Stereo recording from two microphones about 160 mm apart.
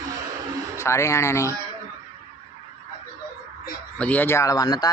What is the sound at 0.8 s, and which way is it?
Speech, 15° left (ahead or behind).